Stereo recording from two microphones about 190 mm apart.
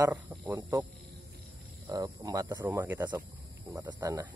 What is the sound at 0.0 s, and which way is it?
Speech, 15° right (ahead or behind).